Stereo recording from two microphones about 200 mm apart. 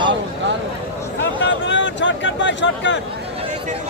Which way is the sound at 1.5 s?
65° left (ahead or behind).